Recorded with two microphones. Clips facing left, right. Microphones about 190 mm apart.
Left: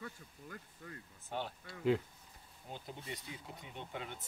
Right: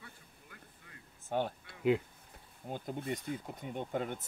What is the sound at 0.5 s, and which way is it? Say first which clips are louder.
Speech: left 5 dB; 45° left (ahead or behind).